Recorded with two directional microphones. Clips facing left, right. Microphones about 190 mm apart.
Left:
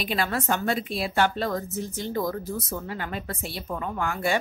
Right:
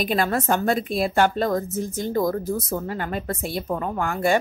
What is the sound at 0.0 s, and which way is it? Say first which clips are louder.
A woman's voice: right 5 dB; 45° right (ahead or behind).